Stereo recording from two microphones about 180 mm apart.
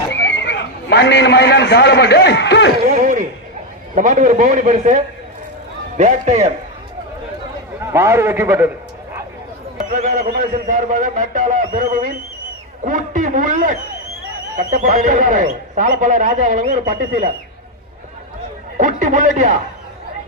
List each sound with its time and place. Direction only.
0.1 s a man's voice: 80° left
2.8 s a sound: 45° right (ahead or behind)
3.9 s a man's voice: 45° right (ahead or behind)
7.8 s a man's voice: 15° right (ahead or behind)
9.9 s a man's voice: 40° right (ahead or behind)
18.8 s speech: 45° right (ahead or behind)